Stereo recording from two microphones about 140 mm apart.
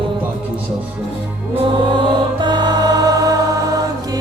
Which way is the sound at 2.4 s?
30° right (ahead or behind).